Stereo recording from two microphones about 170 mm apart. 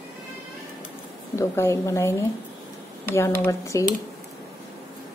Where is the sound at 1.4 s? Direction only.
15° left (ahead or behind).